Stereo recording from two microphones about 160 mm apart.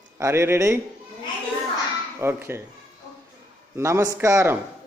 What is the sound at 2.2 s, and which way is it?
Speech, 15° right (ahead or behind).